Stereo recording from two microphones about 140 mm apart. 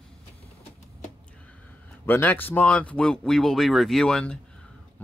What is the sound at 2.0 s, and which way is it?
Speech, 15° left (ahead or behind).